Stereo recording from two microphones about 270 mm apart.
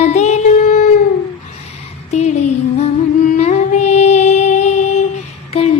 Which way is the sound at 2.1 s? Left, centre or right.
Left.